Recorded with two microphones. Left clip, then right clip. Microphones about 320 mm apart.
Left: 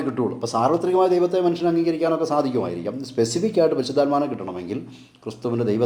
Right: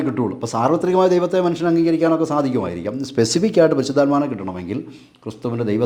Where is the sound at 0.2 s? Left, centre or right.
Right.